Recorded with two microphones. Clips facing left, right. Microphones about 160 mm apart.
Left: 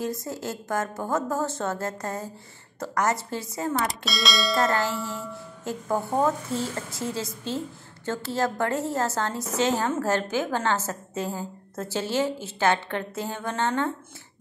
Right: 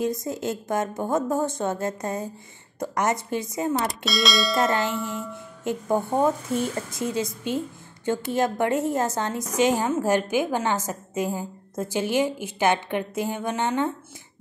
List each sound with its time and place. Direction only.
0.0 s a woman's voice: 20° right (ahead or behind)
3.7 s speech: centre (ahead or behind)
4.6 s speech: 20° right (ahead or behind)